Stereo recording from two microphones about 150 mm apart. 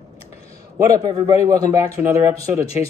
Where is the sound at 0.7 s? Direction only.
25° right (ahead or behind).